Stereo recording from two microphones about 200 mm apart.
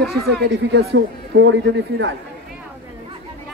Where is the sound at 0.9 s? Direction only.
65° right (ahead or behind).